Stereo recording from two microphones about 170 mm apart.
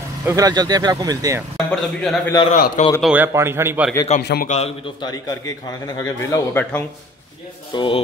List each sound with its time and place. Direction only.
0.2 s speech: 20° right (ahead or behind)
1.7 s a man's voice: 5° left (ahead or behind)
2.5 s a man's voice: 50° left (ahead or behind)
3.0 s a man's voice: 10° right (ahead or behind)
4.2 s a man's voice: 75° left (ahead or behind)
4.5 s a man's voice: 40° left (ahead or behind)
5.0 s a man's voice: 20° left (ahead or behind)
7.7 s a man's voice: 30° left (ahead or behind)